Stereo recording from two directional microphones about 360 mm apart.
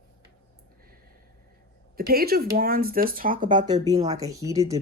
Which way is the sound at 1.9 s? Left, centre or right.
Right.